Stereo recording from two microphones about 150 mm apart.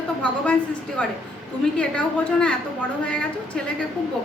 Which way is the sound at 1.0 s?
10° left (ahead or behind).